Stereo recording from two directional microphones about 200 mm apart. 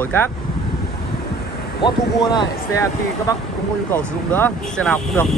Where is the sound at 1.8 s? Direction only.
20° left (ahead or behind).